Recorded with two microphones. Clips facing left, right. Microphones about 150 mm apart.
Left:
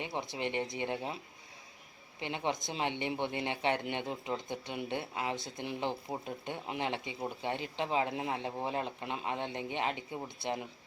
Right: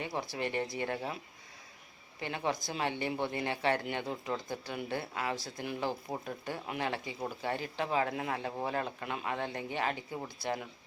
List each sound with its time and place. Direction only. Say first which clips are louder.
0.0 s speech: right 1 dB; 20° left (ahead or behind)
2.2 s speech: right 1 dB; 20° left (ahead or behind)